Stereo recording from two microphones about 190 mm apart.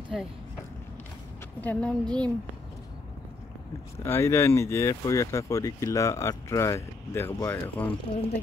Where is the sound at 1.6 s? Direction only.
10° left (ahead or behind).